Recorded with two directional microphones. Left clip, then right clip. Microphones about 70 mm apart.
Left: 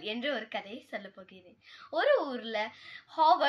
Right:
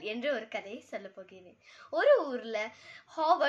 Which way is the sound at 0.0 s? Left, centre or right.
Right.